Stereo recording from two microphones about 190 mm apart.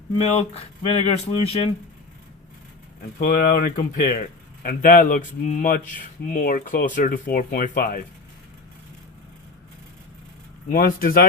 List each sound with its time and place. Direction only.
0.2 s speech: 35° left (ahead or behind)
3.2 s speech: 45° left (ahead or behind)
10.7 s speech: 50° left (ahead or behind)